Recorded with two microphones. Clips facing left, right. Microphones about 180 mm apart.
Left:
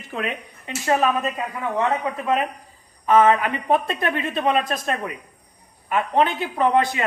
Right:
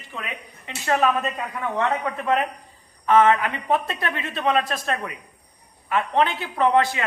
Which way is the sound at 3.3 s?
20° left (ahead or behind).